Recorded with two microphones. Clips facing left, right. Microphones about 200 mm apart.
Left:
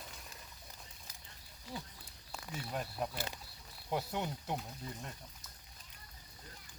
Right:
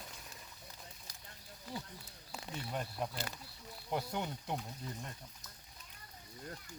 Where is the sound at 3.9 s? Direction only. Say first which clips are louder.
Left 1 dB; centre (ahead or behind).